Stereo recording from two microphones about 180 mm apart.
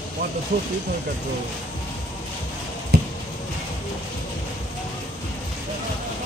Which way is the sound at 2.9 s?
60° right (ahead or behind).